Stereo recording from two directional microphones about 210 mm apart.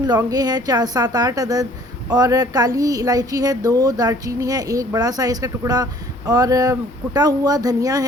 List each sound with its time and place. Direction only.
0.0 s speech: 20° right (ahead or behind)